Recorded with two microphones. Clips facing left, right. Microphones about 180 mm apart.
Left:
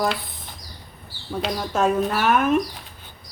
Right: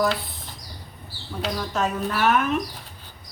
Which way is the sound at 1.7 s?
50° left (ahead or behind).